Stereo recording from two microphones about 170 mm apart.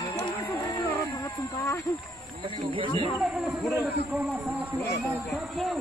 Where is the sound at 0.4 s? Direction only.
20° left (ahead or behind).